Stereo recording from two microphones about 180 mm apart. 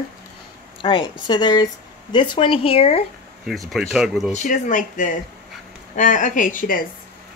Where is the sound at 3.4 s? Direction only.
Centre (ahead or behind).